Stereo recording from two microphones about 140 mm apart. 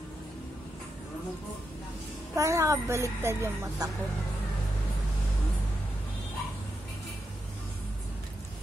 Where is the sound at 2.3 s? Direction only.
20° right (ahead or behind).